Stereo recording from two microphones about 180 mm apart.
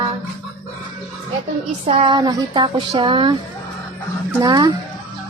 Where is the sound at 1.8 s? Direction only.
25° right (ahead or behind).